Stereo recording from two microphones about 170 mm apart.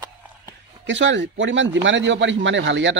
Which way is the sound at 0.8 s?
90° right.